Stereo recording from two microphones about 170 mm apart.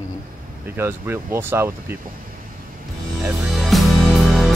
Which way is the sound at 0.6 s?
10° right (ahead or behind).